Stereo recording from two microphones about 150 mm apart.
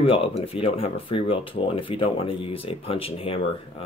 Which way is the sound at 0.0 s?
40° left (ahead or behind).